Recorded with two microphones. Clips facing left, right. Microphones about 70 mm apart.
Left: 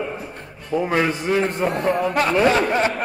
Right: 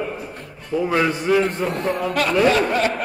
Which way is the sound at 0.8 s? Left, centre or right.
Left.